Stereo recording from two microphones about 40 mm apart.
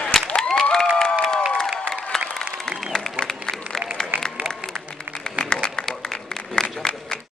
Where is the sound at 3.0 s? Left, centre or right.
Centre.